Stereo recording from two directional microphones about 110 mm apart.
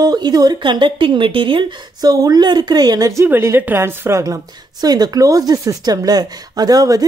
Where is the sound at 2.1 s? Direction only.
35° right (ahead or behind).